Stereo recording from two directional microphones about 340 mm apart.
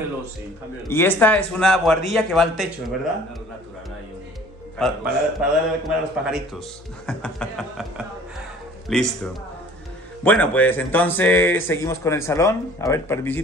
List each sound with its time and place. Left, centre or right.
0.8 s speech: centre
4.8 s speech: centre
8.8 s speech: centre